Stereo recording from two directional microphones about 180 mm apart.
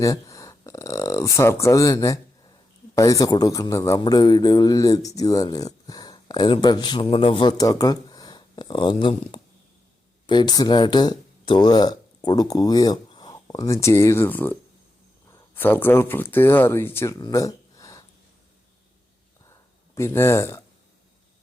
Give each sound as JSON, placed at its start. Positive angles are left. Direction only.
{"t": 0.0, "sound": "a sound", "side_deg": 15}
{"t": 2.9, "sound": "a man's voice", "side_deg": 20}
{"t": 20.0, "sound": "speech", "side_deg": 15}